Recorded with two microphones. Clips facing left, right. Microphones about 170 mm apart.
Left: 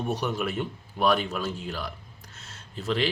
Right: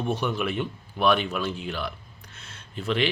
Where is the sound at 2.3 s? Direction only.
40° left (ahead or behind).